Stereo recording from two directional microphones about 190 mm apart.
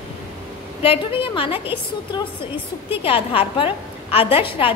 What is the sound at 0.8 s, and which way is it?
Speech, 30° left (ahead or behind).